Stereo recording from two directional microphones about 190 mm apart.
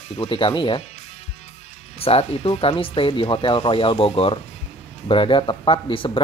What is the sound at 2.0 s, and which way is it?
Speech, 30° left (ahead or behind).